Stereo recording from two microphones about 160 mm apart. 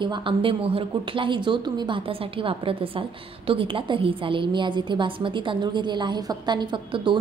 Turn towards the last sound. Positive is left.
turn(degrees=-30)  # may be behind; listen again after turning